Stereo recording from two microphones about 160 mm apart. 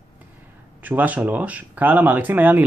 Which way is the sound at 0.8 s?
10° right (ahead or behind).